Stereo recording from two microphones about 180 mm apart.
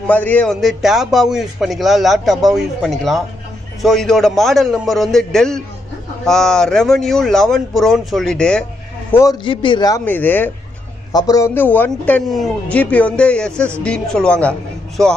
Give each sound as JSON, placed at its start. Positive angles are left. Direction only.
{"t": 0.0, "sound": "a man's voice", "side_deg": 10}
{"t": 9.1, "sound": "a man's voice", "side_deg": 20}
{"t": 10.0, "sound": "a man's voice", "side_deg": 10}
{"t": 11.1, "sound": "a man's voice", "side_deg": 20}